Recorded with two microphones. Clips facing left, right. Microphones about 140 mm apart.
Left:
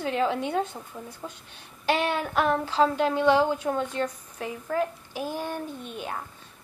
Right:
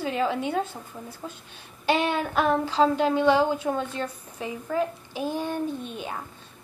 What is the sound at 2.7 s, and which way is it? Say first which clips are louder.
Speech: right 1 dB; 10° left (ahead or behind).